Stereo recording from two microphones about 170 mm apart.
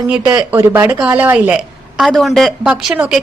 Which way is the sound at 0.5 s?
10° right (ahead or behind).